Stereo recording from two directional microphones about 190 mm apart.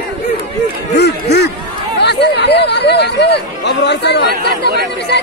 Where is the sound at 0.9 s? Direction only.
60° left (ahead or behind).